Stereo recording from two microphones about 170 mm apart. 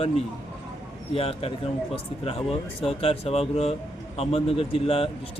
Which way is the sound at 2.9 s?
35° left (ahead or behind).